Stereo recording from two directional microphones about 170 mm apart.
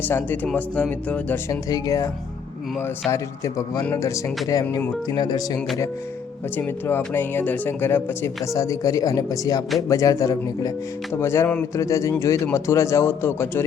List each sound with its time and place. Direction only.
0.1 s speech: 10° left (ahead or behind)
1.7 s speech: 20° left (ahead or behind)
3.1 s speech: 20° left (ahead or behind)
6.6 s speech: 15° left (ahead or behind)